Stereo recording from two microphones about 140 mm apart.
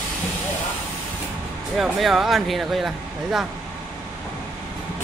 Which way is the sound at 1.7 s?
Centre (ahead or behind).